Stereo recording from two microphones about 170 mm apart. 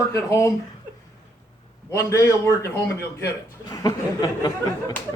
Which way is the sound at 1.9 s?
15° left (ahead or behind).